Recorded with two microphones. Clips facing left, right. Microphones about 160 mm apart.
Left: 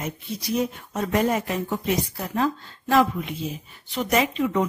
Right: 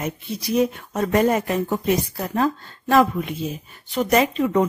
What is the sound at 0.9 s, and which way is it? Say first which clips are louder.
A woman's voice: right 3 dB; 50° right (ahead or behind).